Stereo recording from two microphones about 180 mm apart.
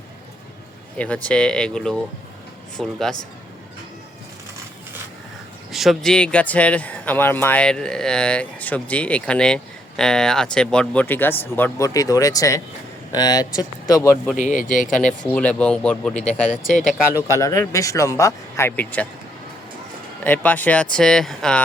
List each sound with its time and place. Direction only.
0.9 s speech: 5° left (ahead or behind)
5.7 s speech: centre (ahead or behind); by 14.2 s 20° left (ahead or behind)
14.3 s speech: 45° left (ahead or behind)
15.3 s speech: 5° left (ahead or behind)
17.2 s speech: 15° left (ahead or behind)
20.2 s speech: 10° left (ahead or behind)